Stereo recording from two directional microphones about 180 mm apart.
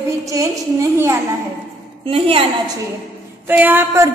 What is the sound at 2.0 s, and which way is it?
Speech, 30° right (ahead or behind).